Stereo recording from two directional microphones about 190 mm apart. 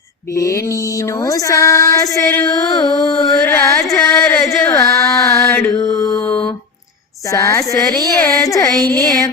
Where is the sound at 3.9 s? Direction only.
10° left (ahead or behind).